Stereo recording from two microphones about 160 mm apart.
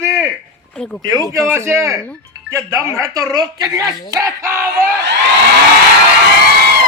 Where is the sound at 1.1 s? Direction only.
20° right (ahead or behind).